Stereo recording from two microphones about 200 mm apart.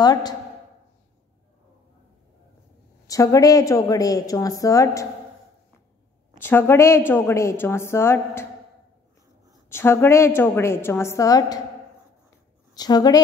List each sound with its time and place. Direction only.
0.0 s a woman's voice: 20° left (ahead or behind)
3.1 s a woman's voice: 15° left (ahead or behind)
6.3 s a woman's voice: 10° left (ahead or behind)
9.7 s a woman's voice: 10° left (ahead or behind)
12.7 s a woman's voice: 20° left (ahead or behind)